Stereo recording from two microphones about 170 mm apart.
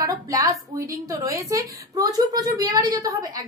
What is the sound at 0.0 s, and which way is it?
Speech, 20° right (ahead or behind).